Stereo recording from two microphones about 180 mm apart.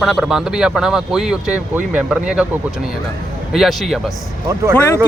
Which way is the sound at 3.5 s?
Centre (ahead or behind).